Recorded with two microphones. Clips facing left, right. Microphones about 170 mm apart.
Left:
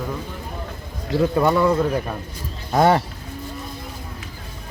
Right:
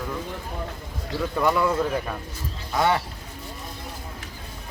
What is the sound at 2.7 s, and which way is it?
Speech, 40° left (ahead or behind).